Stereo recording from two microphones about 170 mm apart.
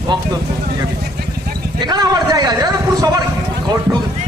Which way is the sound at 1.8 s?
25° right (ahead or behind).